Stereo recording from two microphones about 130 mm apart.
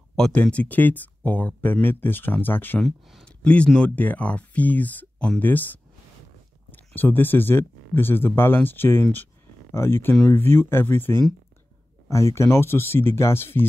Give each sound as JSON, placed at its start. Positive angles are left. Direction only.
{"t": 0.1, "sound": "speech", "side_deg": 10}